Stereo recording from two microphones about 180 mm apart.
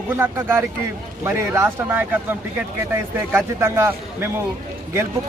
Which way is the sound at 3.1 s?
15° right (ahead or behind).